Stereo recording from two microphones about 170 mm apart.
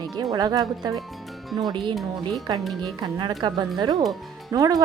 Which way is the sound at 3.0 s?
25° right (ahead or behind).